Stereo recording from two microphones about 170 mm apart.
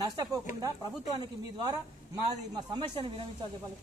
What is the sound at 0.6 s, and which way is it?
A man's voice, 20° right (ahead or behind).